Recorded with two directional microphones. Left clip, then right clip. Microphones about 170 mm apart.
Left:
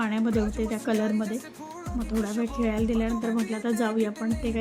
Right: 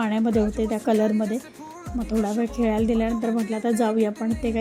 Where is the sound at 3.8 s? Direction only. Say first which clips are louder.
Right 5 dB; 20° right (ahead or behind).